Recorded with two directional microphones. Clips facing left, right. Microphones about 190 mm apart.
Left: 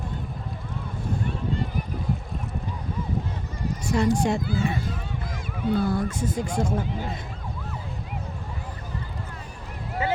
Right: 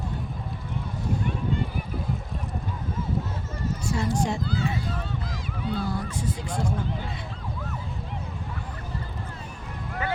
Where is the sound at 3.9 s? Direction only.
70° left (ahead or behind).